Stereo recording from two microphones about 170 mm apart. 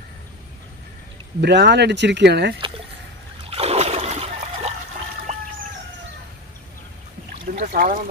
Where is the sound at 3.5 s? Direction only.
35° right (ahead or behind).